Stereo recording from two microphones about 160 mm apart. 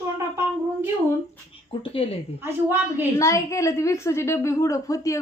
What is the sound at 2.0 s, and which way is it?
Speech, 35° left (ahead or behind).